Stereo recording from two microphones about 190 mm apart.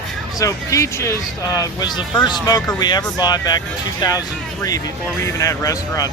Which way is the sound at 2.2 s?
20° left (ahead or behind).